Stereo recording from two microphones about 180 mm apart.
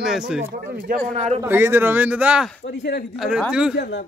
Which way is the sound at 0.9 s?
40° right (ahead or behind).